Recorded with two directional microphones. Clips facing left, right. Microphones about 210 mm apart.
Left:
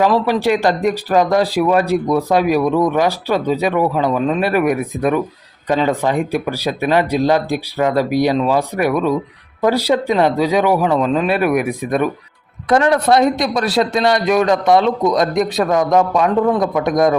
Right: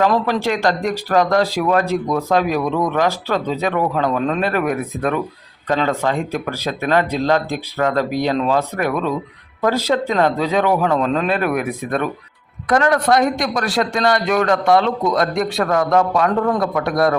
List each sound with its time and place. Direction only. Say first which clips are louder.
0.0 s speech: left 2 dB; 10° left (ahead or behind)
12.6 s a man's voice: left 2 dB; 25° left (ahead or behind)